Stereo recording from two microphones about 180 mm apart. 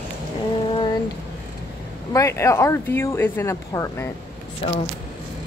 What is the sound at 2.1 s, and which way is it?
A woman's voice, 15° left (ahead or behind).